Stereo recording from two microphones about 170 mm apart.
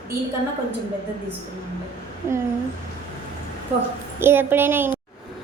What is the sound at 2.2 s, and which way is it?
Speech, 15° right (ahead or behind).